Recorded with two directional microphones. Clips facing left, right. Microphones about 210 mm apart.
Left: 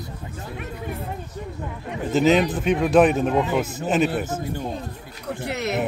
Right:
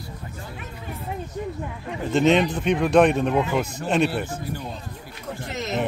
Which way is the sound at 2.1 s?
5° left (ahead or behind).